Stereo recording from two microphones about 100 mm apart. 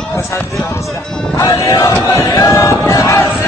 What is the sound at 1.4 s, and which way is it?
Music, 35° left (ahead or behind).